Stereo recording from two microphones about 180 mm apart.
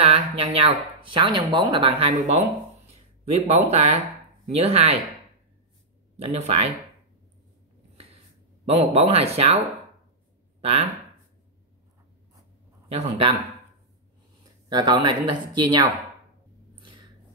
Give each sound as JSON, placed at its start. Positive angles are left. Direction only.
{"t": 0.0, "sound": "speech", "side_deg": -35}
{"t": 6.1, "sound": "speech", "side_deg": -35}
{"t": 8.6, "sound": "speech", "side_deg": -35}
{"t": 10.6, "sound": "speech", "side_deg": -35}
{"t": 12.8, "sound": "speech", "side_deg": -30}
{"t": 14.4, "sound": "a sound", "side_deg": -25}
{"t": 15.6, "sound": "speech", "side_deg": -25}